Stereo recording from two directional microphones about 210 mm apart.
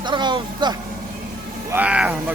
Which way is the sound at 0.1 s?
20° right (ahead or behind).